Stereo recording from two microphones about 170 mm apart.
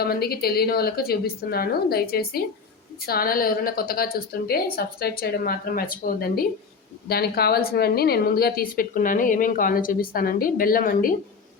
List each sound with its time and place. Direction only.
0.0 s a woman's voice: 65° left (ahead or behind)